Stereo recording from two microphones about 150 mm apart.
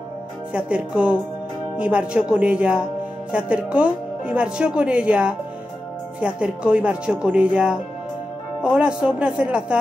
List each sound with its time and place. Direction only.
0.5 s speech: 10° right (ahead or behind)